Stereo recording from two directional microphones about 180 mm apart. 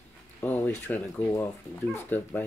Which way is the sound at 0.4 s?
10° left (ahead or behind).